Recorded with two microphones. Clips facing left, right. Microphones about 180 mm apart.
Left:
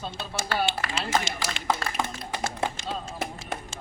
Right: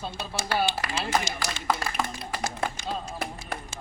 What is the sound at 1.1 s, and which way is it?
Speech, 20° left (ahead or behind).